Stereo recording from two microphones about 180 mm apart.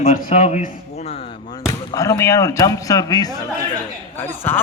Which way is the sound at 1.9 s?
20° left (ahead or behind).